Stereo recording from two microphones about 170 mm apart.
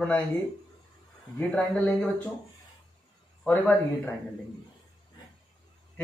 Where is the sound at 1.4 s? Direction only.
5° left (ahead or behind).